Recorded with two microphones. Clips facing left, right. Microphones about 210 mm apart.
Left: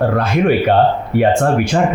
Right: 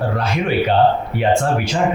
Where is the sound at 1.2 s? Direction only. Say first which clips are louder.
Left 3 dB; 55° left (ahead or behind).